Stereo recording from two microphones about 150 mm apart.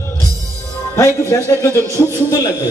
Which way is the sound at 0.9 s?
20° left (ahead or behind).